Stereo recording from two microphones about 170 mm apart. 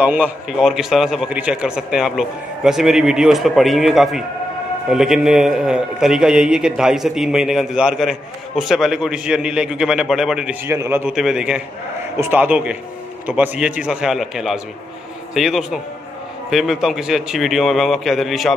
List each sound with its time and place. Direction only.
0.0 s a man's voice: 10° right (ahead or behind)